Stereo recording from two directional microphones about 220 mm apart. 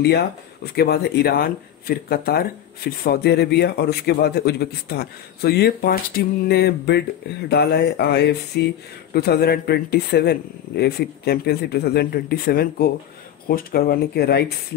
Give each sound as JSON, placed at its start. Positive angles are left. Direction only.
{"t": 0.7, "sound": "speech", "side_deg": 45}